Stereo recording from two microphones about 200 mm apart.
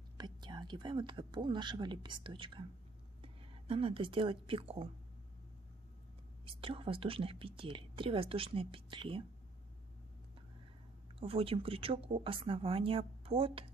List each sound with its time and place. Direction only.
0.2 s a woman's voice: 20° right (ahead or behind)
6.4 s speech: 25° right (ahead or behind)
11.1 s speech: 30° right (ahead or behind)